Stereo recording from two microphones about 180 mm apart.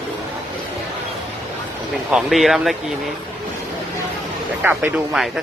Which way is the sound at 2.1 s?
Centre (ahead or behind).